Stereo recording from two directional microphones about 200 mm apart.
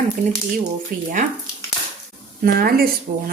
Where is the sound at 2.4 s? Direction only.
45° right (ahead or behind).